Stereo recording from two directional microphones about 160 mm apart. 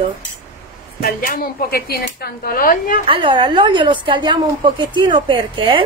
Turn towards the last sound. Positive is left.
turn(degrees=-30)  # may be behind; listen again after turning